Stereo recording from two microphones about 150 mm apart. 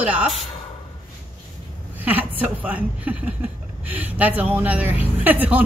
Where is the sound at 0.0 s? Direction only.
10° right (ahead or behind).